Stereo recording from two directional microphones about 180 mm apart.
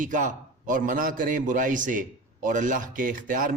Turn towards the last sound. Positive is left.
turn(degrees=-50)  # may be behind; listen again after turning